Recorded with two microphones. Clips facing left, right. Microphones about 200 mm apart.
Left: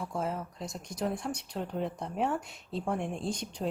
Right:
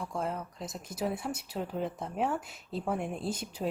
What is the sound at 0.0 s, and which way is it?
Speech, centre (ahead or behind).